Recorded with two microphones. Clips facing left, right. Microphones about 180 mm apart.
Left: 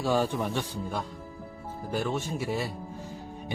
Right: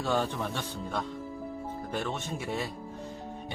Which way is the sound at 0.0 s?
10° left (ahead or behind).